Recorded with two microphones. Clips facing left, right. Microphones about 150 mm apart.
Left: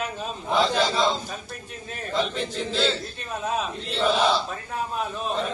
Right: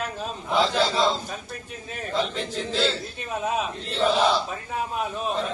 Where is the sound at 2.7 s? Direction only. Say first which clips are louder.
Even; 5° right (ahead or behind).